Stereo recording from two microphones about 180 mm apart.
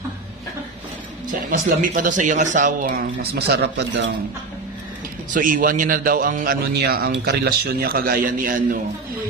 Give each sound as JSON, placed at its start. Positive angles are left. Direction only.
{"t": 1.8, "sound": "speech", "side_deg": -50}
{"t": 5.3, "sound": "speech", "side_deg": -50}